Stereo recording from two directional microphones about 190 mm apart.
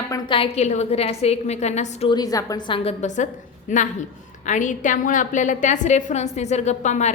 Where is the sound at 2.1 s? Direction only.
20° left (ahead or behind).